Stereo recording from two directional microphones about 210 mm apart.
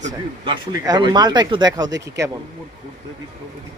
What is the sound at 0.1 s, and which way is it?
Speech, 20° right (ahead or behind).